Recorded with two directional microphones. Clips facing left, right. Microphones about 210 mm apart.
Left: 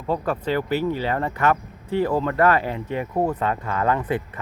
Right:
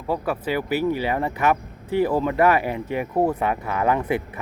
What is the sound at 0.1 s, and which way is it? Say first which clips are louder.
Speech: left 1 dB; 10° right (ahead or behind).